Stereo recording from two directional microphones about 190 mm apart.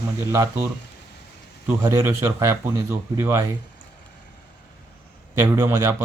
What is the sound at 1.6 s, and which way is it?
A man's voice, 15° right (ahead or behind).